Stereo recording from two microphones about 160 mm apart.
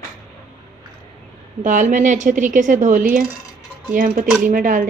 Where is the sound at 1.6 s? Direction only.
50° right (ahead or behind).